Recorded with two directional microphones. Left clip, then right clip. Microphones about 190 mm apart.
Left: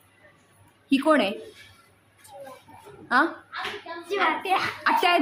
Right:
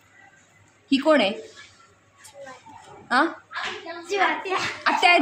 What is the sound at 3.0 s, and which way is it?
Speech, 10° right (ahead or behind).